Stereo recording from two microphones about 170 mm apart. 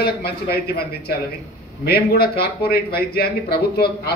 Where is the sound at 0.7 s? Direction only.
70° left (ahead or behind).